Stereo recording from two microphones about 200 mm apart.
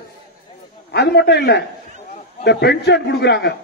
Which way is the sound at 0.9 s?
55° left (ahead or behind).